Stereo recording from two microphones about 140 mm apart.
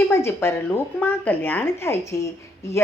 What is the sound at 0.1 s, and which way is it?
A woman's voice, 15° left (ahead or behind).